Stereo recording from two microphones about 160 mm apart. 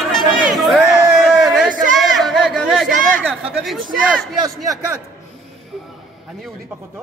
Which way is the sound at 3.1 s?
5° left (ahead or behind).